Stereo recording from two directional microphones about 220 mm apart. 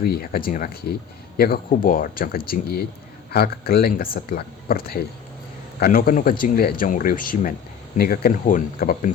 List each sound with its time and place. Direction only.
0.0 s speech: 45° left (ahead or behind)